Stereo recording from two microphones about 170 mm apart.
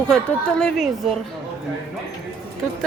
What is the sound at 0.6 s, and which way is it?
Speech, centre (ahead or behind).